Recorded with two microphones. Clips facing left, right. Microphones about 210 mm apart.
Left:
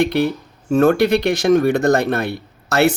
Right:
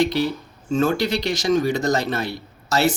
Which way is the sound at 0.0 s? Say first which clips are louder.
Left 3 dB; 60° left (ahead or behind).